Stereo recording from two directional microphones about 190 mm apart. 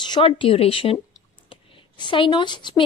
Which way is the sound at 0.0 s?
25° left (ahead or behind).